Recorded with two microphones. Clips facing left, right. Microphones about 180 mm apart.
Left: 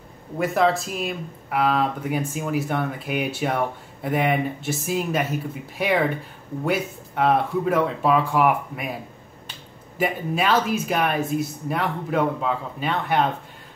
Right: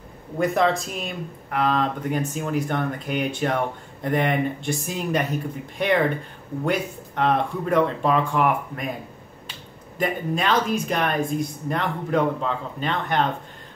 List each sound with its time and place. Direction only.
0.4 s speech: centre (ahead or behind)
9.9 s speech: 5° left (ahead or behind)